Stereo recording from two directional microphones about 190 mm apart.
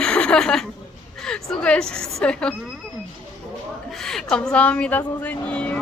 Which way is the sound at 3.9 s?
Centre (ahead or behind).